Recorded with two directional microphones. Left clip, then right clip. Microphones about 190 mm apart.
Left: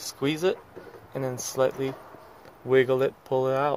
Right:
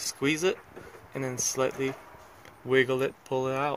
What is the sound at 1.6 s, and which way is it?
Speech, 5° right (ahead or behind).